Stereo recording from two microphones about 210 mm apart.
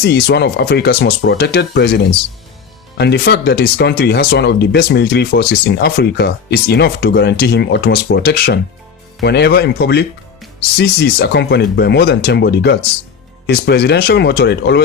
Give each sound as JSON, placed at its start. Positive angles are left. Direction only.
{"t": 0.0, "sound": "speech", "side_deg": 50}
{"t": 3.0, "sound": "speech", "side_deg": 50}